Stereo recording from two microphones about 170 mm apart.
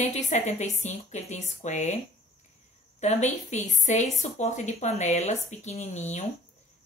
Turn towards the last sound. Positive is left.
turn(degrees=40)  # may be behind; listen again after turning